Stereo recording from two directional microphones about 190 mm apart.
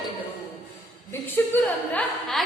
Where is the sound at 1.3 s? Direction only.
10° left (ahead or behind).